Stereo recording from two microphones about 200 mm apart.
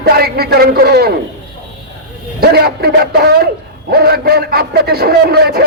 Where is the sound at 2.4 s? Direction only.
50° right (ahead or behind).